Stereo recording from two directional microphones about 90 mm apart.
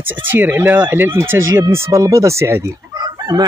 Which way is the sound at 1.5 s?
35° right (ahead or behind).